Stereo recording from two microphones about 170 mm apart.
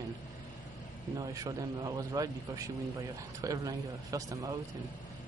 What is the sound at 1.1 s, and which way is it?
A man's voice, 20° right (ahead or behind).